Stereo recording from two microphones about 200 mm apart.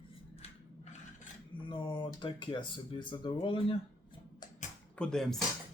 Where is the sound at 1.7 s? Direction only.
25° left (ahead or behind).